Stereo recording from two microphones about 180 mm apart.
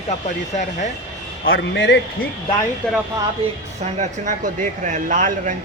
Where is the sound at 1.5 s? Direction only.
90° left.